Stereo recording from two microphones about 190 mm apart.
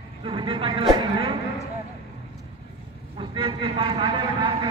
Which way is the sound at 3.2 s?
25° right (ahead or behind).